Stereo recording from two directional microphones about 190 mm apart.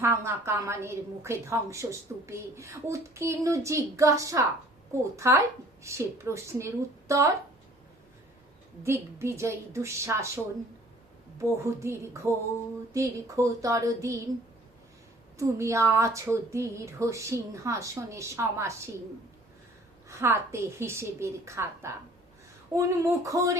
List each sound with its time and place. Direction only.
0.0 s a woman's voice: 15° right (ahead or behind)
8.8 s a woman's voice: 15° right (ahead or behind)
15.4 s a woman's voice: 15° right (ahead or behind)
20.1 s a woman's voice: 15° right (ahead or behind)